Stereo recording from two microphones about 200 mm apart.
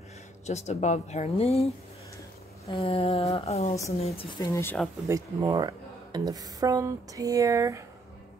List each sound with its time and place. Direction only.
0.5 s speech: 35° left (ahead or behind)
2.7 s a sound: 25° left (ahead or behind)
4.5 s speech: 10° left (ahead or behind)
5.0 s speech: 15° right (ahead or behind)